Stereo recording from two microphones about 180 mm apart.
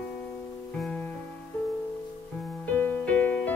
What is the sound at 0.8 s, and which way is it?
Music, 5° left (ahead or behind).